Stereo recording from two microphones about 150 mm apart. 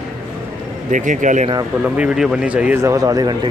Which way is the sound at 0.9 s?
55° right (ahead or behind).